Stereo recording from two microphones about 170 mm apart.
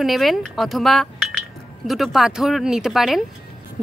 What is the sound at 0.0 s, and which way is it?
Speech, centre (ahead or behind).